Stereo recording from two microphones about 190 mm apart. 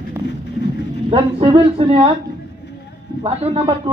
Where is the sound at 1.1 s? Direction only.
30° right (ahead or behind).